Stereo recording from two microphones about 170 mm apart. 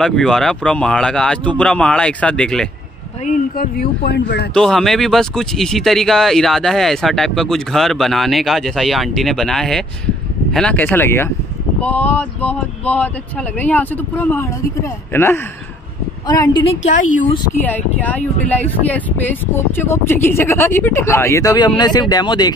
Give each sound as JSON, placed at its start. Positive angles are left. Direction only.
{"t": 0.0, "sound": "speech", "side_deg": 5}
{"t": 3.3, "sound": "a man's voice", "side_deg": 50}
{"t": 4.6, "sound": "speech", "side_deg": 5}
{"t": 16.3, "sound": "speech", "side_deg": 25}
{"t": 16.8, "sound": "a woman's voice", "side_deg": 50}
{"t": 17.6, "sound": "speech", "side_deg": 10}